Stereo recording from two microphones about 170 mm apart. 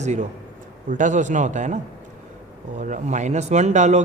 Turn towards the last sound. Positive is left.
turn(degrees=-45)  # may be behind; listen again after turning